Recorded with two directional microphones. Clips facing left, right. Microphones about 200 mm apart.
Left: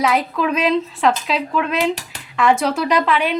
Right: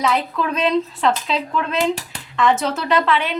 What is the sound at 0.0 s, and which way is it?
A woman's voice, 10° left (ahead or behind).